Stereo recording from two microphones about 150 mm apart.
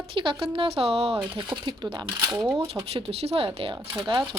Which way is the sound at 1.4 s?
30° right (ahead or behind).